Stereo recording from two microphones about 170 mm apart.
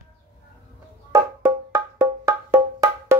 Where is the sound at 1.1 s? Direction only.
20° right (ahead or behind).